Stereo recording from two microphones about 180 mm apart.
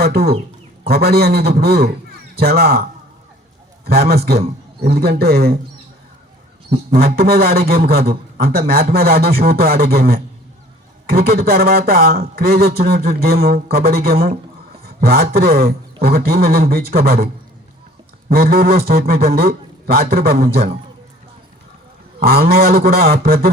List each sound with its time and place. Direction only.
0.0 s speech: 60° right (ahead or behind)
3.8 s speech: 60° right (ahead or behind)
6.9 s speech: 60° right (ahead or behind)
18.3 s speech: 55° right (ahead or behind)
22.2 s speech: 55° right (ahead or behind)